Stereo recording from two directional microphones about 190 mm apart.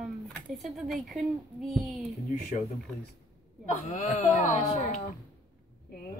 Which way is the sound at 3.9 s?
35° left (ahead or behind).